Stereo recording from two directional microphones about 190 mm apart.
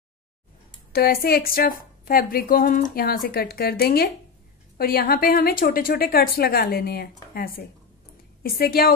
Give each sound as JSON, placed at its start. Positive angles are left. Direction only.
{"t": 0.9, "sound": "a woman's voice", "side_deg": 55}